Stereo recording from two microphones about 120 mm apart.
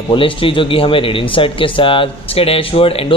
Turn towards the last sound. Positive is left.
turn(degrees=50)  # may be behind; listen again after turning